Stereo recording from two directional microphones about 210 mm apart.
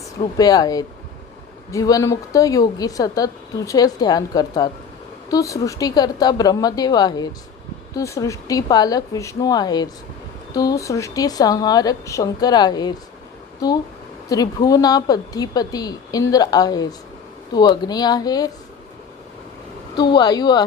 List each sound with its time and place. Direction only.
0.2 s a woman's voice: 20° left (ahead or behind)
14.3 s a woman's voice: 15° left (ahead or behind)
20.0 s a woman's voice: 20° left (ahead or behind)